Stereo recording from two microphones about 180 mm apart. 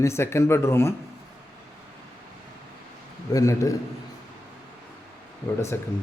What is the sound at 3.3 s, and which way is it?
Speech, 20° left (ahead or behind).